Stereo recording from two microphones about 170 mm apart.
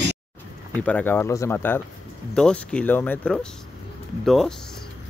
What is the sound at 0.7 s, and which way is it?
Speech, 10° left (ahead or behind).